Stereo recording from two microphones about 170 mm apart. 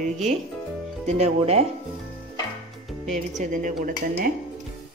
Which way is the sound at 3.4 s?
50° right (ahead or behind).